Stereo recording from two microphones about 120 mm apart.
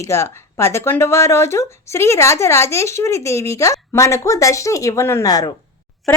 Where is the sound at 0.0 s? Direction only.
25° left (ahead or behind).